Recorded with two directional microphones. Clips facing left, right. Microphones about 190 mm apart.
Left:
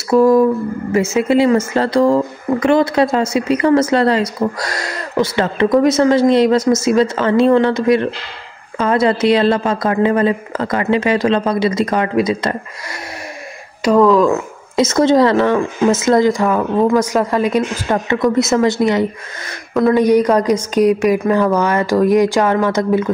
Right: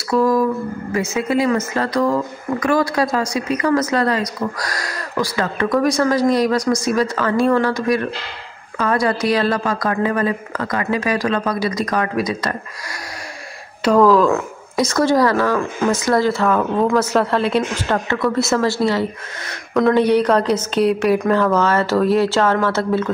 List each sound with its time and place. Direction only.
0.1 s a woman's voice: 25° left (ahead or behind)
13.8 s speech: centre (ahead or behind)
14.8 s speech: 20° left (ahead or behind)
19.7 s speech: 5° left (ahead or behind)